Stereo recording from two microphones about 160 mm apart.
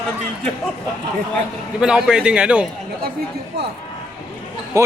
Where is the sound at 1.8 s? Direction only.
5° right (ahead or behind).